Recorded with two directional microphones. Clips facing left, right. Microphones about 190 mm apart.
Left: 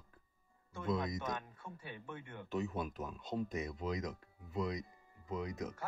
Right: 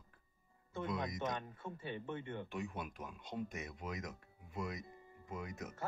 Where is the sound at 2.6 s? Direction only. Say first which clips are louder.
Left 9 dB; 25° left (ahead or behind).